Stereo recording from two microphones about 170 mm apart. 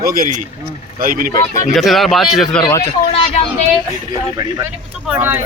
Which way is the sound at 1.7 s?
Centre (ahead or behind).